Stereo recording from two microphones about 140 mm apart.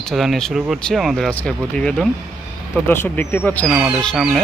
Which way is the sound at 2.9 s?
15° left (ahead or behind).